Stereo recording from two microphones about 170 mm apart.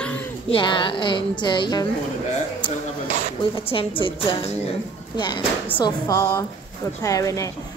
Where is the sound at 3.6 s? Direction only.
30° left (ahead or behind).